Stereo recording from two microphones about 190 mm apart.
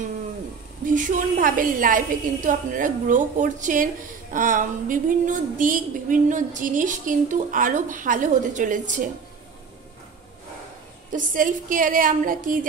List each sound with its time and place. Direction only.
0.8 s a woman's voice: 45° right (ahead or behind)
11.1 s a woman's voice: 45° right (ahead or behind)